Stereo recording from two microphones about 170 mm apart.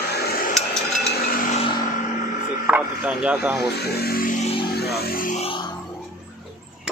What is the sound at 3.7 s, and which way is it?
Speech, 70° left (ahead or behind).